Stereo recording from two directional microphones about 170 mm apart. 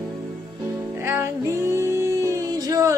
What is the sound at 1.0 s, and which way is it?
Music, 15° right (ahead or behind).